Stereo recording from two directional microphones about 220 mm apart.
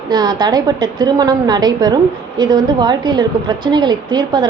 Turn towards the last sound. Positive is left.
turn(degrees=-20)  # may be behind; listen again after turning